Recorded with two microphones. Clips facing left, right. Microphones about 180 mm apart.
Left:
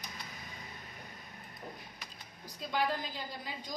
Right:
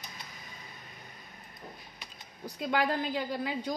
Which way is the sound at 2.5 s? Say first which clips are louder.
Right 4 dB; 65° right (ahead or behind).